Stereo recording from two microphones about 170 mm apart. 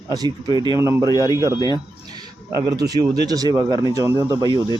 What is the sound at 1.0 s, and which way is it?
Speech, 20° left (ahead or behind).